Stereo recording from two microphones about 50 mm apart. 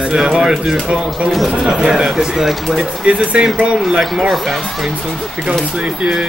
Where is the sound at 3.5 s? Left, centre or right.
Right.